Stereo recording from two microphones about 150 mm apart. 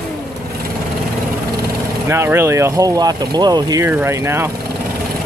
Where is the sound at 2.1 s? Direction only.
15° right (ahead or behind).